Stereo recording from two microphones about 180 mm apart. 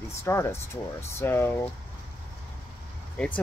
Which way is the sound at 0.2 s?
15° left (ahead or behind).